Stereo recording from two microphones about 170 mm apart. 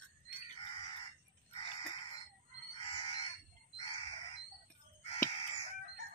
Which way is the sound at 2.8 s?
30° left (ahead or behind).